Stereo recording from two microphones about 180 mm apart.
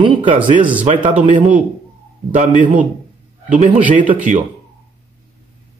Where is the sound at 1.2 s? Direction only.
45° right (ahead or behind).